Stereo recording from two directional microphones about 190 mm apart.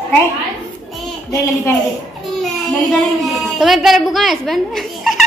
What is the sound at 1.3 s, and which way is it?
Speech, 15° left (ahead or behind).